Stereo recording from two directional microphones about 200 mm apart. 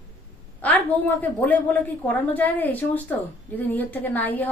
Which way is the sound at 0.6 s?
10° left (ahead or behind).